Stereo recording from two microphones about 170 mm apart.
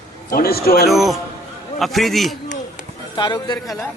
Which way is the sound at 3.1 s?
25° left (ahead or behind).